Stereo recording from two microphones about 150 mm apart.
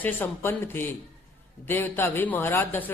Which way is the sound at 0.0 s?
10° left (ahead or behind).